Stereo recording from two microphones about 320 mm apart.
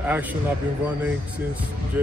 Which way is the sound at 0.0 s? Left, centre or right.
Centre.